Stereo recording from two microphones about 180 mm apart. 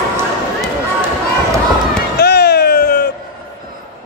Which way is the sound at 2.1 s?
65° left (ahead or behind).